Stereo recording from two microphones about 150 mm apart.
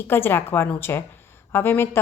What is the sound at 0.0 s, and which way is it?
A woman's voice, 15° left (ahead or behind).